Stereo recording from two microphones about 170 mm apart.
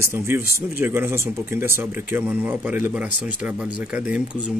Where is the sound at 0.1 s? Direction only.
15° right (ahead or behind).